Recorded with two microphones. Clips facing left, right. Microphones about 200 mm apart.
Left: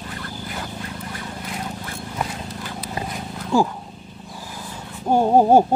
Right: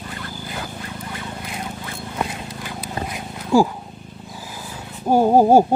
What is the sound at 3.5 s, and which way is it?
Speech, 10° right (ahead or behind).